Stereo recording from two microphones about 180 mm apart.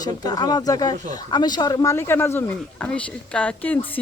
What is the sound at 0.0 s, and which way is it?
Speech, 20° left (ahead or behind).